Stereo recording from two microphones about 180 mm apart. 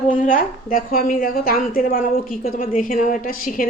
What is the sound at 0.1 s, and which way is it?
A woman's voice, 50° left (ahead or behind).